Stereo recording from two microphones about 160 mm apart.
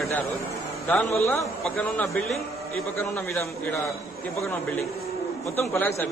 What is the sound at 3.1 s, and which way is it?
Speech, 15° left (ahead or behind).